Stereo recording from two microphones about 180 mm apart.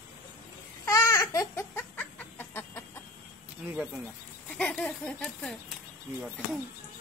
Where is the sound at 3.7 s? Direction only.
10° right (ahead or behind).